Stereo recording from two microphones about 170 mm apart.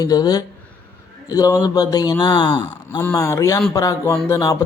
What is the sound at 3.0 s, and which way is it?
Speech, 15° left (ahead or behind).